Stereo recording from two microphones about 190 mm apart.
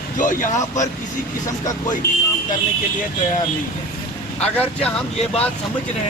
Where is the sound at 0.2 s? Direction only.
45° left (ahead or behind).